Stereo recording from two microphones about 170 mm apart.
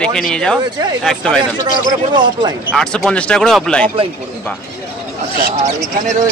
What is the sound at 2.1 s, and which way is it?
Speech, 25° right (ahead or behind).